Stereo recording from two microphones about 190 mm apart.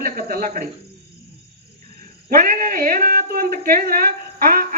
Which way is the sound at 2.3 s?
50° right (ahead or behind).